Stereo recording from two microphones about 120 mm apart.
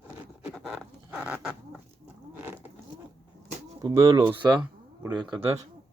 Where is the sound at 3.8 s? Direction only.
25° right (ahead or behind).